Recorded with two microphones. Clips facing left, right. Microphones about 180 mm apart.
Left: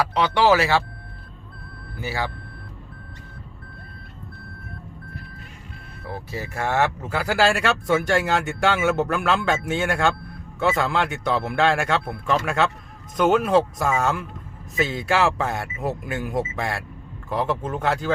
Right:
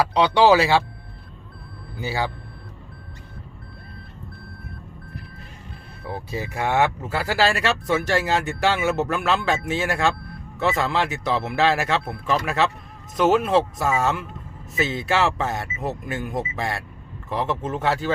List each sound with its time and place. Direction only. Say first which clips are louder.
0.2 s speech: right 2 dB; 20° right (ahead or behind)
2.0 s speech: right 2 dB; 20° right (ahead or behind)
6.1 s speech: right 2 dB; 20° right (ahead or behind)
7.0 s speech: left 1 dB; 5° right (ahead or behind)